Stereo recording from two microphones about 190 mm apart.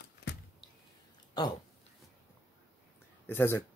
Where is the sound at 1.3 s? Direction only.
20° left (ahead or behind).